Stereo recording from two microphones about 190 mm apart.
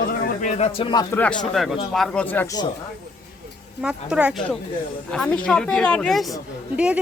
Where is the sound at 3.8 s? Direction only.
5° right (ahead or behind).